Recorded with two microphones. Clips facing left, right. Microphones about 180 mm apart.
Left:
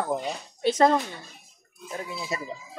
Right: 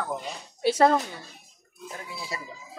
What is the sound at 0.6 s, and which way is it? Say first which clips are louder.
Speech: even; 10° right (ahead or behind).